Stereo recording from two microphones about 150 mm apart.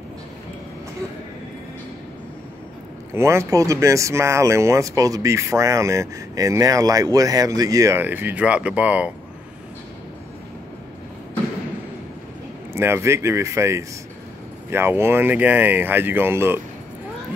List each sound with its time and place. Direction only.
3.1 s speech: 15° right (ahead or behind)
12.7 s speech: 15° right (ahead or behind)